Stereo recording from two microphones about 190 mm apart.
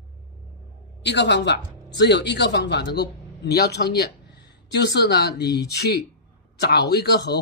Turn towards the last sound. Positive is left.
turn(degrees=60)  # may be behind; listen again after turning